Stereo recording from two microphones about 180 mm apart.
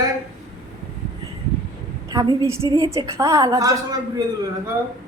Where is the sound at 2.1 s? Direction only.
25° right (ahead or behind).